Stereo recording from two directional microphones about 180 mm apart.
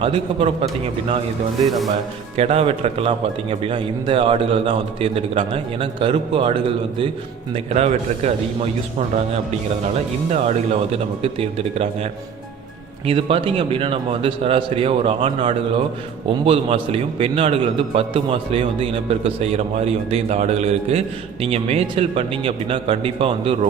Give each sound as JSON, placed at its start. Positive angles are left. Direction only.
{"t": 0.0, "sound": "speech", "side_deg": -30}
{"t": 1.6, "sound": "speech", "side_deg": 0}
{"t": 1.9, "sound": "speech", "side_deg": -35}
{"t": 10.2, "sound": "speech", "side_deg": -35}
{"t": 13.1, "sound": "speech", "side_deg": -30}